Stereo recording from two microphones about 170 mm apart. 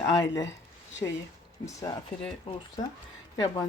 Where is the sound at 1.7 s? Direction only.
20° left (ahead or behind).